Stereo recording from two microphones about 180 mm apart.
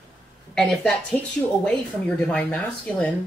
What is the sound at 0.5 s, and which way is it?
Speech, 5° left (ahead or behind).